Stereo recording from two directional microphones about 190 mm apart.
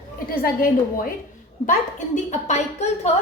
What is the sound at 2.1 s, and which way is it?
Speech, 35° left (ahead or behind).